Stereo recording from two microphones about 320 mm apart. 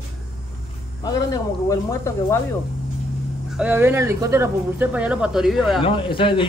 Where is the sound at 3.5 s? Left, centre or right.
Centre.